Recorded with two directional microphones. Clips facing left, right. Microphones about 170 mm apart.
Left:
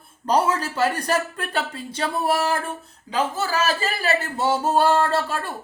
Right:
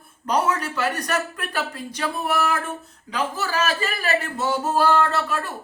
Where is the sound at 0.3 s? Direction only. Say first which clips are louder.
Left 2 dB; 30° left (ahead or behind).